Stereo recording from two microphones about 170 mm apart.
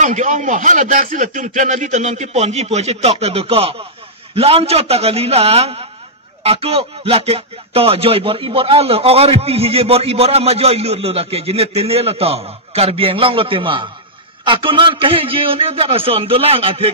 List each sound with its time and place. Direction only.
0.0 s speech: 50° right (ahead or behind)